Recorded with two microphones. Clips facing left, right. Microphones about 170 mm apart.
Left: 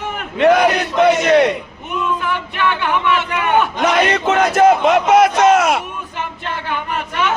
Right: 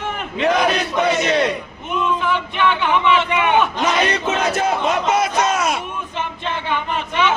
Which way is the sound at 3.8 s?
60° left (ahead or behind).